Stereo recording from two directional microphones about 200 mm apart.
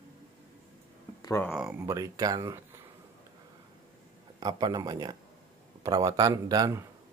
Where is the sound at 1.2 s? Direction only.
15° left (ahead or behind).